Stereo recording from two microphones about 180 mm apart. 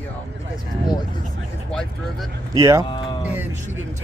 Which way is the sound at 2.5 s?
20° right (ahead or behind).